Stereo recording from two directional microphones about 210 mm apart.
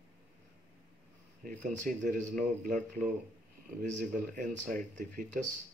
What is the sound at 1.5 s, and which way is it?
Speech, 40° right (ahead or behind).